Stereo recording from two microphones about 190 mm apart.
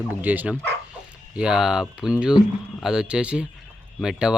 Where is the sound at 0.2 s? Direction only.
10° right (ahead or behind).